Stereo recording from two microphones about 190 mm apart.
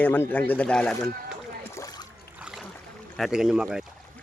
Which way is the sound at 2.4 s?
5° right (ahead or behind).